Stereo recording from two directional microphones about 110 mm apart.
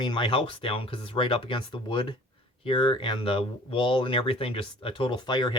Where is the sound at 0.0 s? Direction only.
50° left (ahead or behind).